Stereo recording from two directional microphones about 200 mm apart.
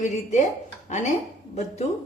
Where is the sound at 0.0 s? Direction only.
35° left (ahead or behind).